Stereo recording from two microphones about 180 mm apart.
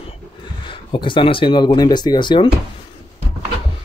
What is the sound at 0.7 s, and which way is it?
Speech, 30° left (ahead or behind).